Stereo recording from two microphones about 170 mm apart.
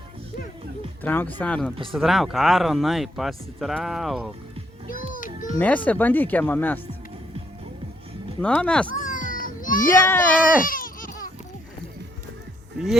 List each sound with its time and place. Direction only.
1.0 s speech: 10° left (ahead or behind)
4.9 s music: 55° left (ahead or behind)
5.5 s speech: 10° left (ahead or behind)
8.4 s speech: 5° left (ahead or behind)
9.0 s a sound: 50° left (ahead or behind)
9.9 s speech: 10° left (ahead or behind)
10.7 s a sound: 55° left (ahead or behind)